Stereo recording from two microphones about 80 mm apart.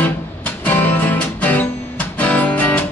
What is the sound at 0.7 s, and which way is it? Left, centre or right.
Music, left.